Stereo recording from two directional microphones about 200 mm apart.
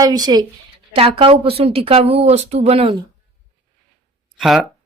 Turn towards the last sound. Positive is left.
turn(degrees=0)  # may be behind; listen again after turning